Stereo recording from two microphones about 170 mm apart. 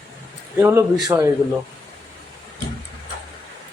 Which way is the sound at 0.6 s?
15° right (ahead or behind).